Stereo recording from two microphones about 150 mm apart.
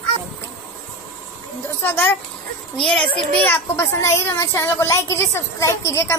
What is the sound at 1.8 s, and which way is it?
Speech, 15° left (ahead or behind).